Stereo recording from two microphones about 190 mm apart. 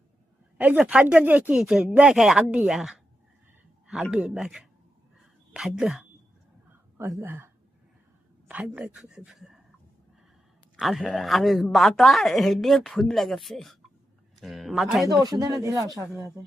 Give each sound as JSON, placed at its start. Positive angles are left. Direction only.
{"t": 0.6, "sound": "a woman's voice", "side_deg": -10}
{"t": 10.8, "sound": "a woman's voice", "side_deg": 0}
{"t": 15.0, "sound": "speech", "side_deg": -20}